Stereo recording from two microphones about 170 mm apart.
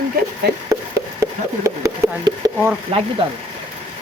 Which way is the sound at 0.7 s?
20° right (ahead or behind).